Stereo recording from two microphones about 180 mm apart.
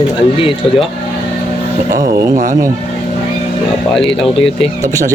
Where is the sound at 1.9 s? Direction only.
20° right (ahead or behind).